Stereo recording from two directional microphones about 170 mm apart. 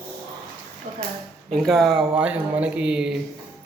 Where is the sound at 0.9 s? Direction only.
45° right (ahead or behind).